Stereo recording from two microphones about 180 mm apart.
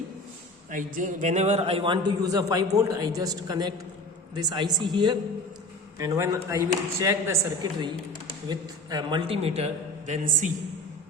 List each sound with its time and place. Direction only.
0.7 s a man's voice: 45° right (ahead or behind)